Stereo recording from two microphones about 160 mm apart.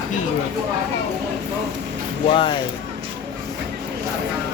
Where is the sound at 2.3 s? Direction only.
35° left (ahead or behind).